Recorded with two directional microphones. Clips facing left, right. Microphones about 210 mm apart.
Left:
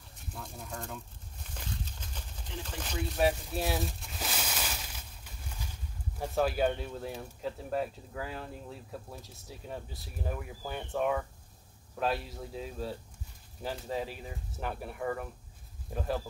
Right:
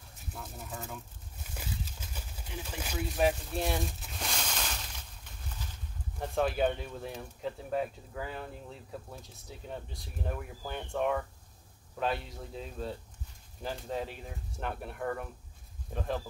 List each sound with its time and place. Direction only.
0.3 s speech: 5° right (ahead or behind)
1.5 s a sound: 5° right (ahead or behind); by 5.7 s 10° left (ahead or behind)
6.1 s speech: 5° left (ahead or behind)